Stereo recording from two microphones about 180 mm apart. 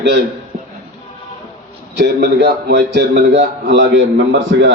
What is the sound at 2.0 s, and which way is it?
A man's voice, 70° right (ahead or behind).